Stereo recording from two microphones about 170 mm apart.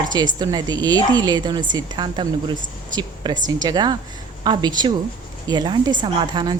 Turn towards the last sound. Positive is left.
turn(degrees=-25)  # may be behind; listen again after turning